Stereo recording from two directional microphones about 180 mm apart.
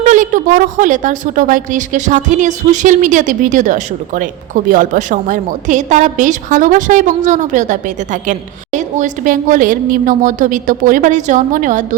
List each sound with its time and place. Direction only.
0.0 s a woman's voice: 45° right (ahead or behind)